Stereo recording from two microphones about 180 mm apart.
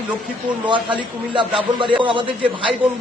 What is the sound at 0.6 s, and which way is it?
A man's voice, 25° right (ahead or behind).